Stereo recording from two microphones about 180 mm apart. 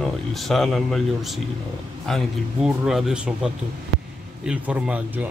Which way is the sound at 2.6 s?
5° right (ahead or behind).